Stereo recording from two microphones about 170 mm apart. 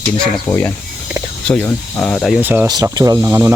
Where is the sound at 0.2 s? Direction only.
10° left (ahead or behind).